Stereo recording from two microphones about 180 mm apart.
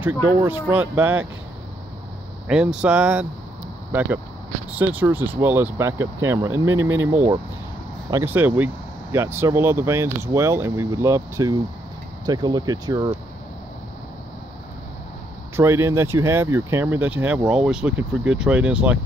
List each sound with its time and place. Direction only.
0.0 s speech: 10° right (ahead or behind)
2.4 s speech: 5° right (ahead or behind)
15.5 s speech: 15° right (ahead or behind)